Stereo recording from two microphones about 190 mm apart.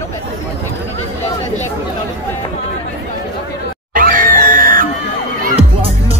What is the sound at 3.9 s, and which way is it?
Music, 45° right (ahead or behind).